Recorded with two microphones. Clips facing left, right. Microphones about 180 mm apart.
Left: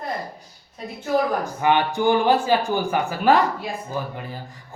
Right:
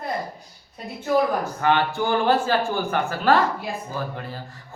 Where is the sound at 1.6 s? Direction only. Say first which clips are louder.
Left 3 dB; 15° left (ahead or behind).